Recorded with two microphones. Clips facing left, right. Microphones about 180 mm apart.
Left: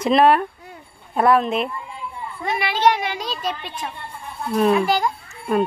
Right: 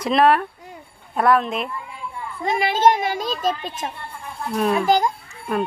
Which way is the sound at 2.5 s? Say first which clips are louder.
Right 2 dB; 45° right (ahead or behind).